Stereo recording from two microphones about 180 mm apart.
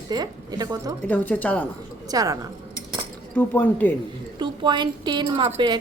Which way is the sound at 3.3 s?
10° left (ahead or behind).